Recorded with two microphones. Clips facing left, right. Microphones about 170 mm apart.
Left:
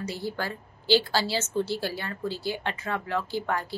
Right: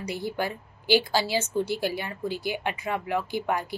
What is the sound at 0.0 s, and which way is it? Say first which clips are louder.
Speech: right 2 dB; 15° right (ahead or behind).